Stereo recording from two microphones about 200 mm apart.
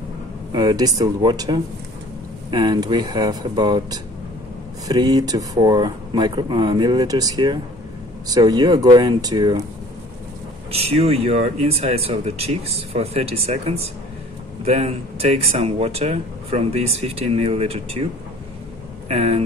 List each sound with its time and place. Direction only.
0.5 s speech: 25° right (ahead or behind)
10.7 s speech: 30° right (ahead or behind)
19.0 s speech: 30° right (ahead or behind)